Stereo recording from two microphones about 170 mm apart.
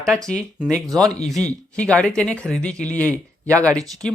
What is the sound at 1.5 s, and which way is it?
Speech, 5° left (ahead or behind).